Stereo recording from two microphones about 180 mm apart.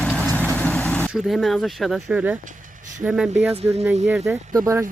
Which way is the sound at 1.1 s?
Centre (ahead or behind).